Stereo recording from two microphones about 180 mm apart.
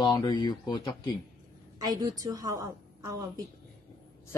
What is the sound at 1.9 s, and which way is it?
A woman's voice, 20° right (ahead or behind).